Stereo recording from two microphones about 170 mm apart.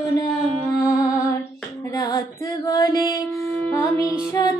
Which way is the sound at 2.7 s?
20° left (ahead or behind).